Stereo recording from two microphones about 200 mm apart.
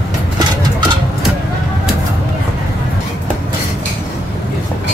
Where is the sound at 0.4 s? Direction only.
20° right (ahead or behind).